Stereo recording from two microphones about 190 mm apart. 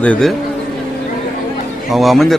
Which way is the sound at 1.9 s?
Centre (ahead or behind).